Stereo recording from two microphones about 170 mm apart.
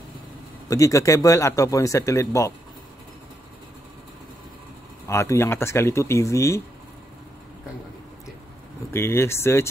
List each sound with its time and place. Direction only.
0.7 s speech: 20° left (ahead or behind)
5.0 s speech: 15° left (ahead or behind)
8.9 s speech: 15° left (ahead or behind)